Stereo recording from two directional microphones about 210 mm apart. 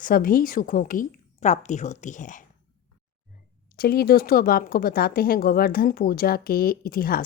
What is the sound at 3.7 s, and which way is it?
Speech, 45° left (ahead or behind).